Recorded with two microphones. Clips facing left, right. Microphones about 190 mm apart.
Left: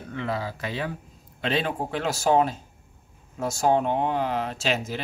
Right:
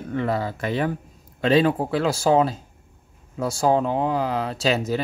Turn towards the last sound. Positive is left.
turn(degrees=-40)  # may be behind; listen again after turning